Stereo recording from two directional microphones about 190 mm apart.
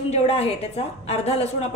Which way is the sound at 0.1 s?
35° left (ahead or behind).